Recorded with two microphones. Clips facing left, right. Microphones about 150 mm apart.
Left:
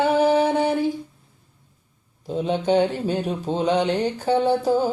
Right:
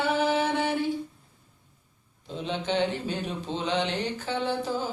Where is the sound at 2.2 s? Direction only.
45° left (ahead or behind).